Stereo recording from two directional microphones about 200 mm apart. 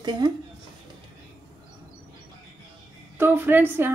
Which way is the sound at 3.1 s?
10° right (ahead or behind).